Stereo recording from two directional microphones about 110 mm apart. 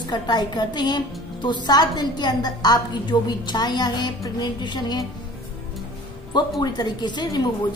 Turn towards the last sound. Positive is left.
turn(degrees=40)  # may be behind; listen again after turning